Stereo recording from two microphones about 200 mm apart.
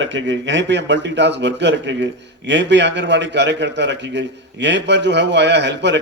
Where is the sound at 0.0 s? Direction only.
70° right (ahead or behind).